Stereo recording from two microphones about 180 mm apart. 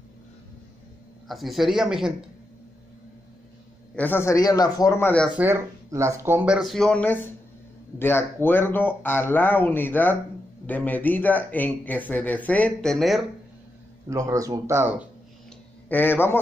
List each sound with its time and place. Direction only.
1.3 s speech: centre (ahead or behind)
3.9 s speech: 10° left (ahead or behind)
5.4 s speech: 15° right (ahead or behind); by 13.2 s centre (ahead or behind)
14.0 s speech: 15° right (ahead or behind)
15.9 s speech: 10° left (ahead or behind)